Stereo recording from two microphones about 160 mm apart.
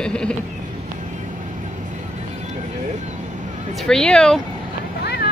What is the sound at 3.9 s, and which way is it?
Speech, 5° left (ahead or behind).